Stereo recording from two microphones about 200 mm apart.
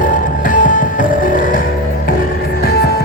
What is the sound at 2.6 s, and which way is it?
Music, 50° left (ahead or behind).